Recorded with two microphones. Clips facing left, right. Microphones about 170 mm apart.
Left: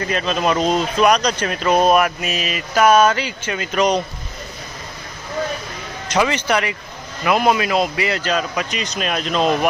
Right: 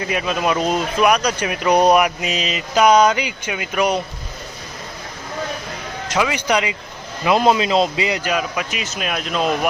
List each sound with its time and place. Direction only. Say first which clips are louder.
0.0 s speech: left 1 dB; 10° right (ahead or behind)
6.1 s a man's voice: left 2 dB; centre (ahead or behind)
6.3 s speech: even; 15° right (ahead or behind)